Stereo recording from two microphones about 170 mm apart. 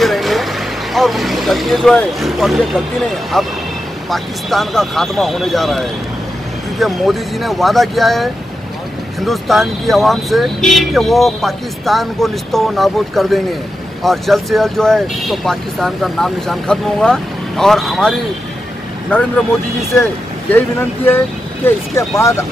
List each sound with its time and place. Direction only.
0.0 s vehicle: centre (ahead or behind)
0.9 s speech: centre (ahead or behind)
20.5 s speech: 10° left (ahead or behind)